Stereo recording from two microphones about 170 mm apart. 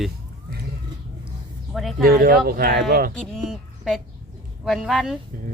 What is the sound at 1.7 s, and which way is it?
Speech, centre (ahead or behind).